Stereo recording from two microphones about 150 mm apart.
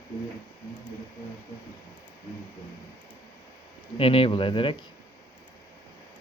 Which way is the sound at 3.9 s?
35° left (ahead or behind).